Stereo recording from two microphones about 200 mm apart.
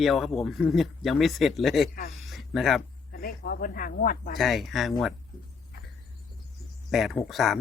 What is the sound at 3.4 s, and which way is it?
Speech, 45° left (ahead or behind).